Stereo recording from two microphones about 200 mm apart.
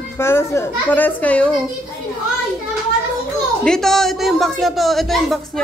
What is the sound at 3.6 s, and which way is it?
A woman's voice, centre (ahead or behind).